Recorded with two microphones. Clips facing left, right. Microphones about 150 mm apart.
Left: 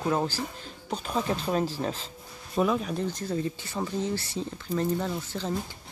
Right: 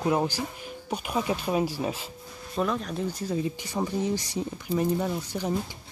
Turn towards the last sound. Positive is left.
turn(degrees=-15)  # may be behind; listen again after turning